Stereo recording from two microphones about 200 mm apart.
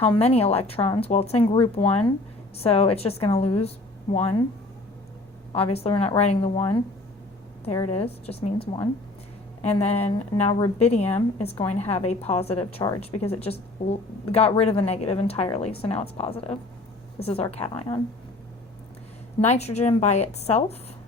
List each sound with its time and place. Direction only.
0.0 s a woman's voice: 30° left (ahead or behind)
5.5 s a woman's voice: 30° left (ahead or behind)
7.9 s a woman's voice: 30° left (ahead or behind)
9.6 s a woman's voice: 30° left (ahead or behind)
19.4 s speech: 35° left (ahead or behind)